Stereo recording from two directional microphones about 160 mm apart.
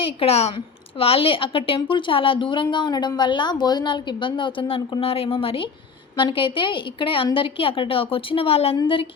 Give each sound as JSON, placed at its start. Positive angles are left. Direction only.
{"t": 0.2, "sound": "a woman's voice", "side_deg": 40}